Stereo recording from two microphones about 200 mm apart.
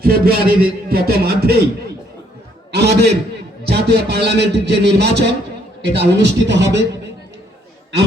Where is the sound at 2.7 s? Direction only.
55° right (ahead or behind).